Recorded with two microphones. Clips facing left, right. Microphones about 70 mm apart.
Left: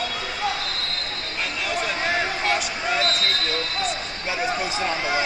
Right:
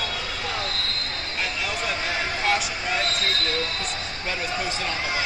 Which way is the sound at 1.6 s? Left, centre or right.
Centre.